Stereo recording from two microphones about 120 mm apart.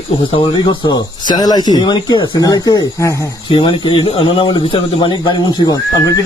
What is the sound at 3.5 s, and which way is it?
Speech, 45° left (ahead or behind).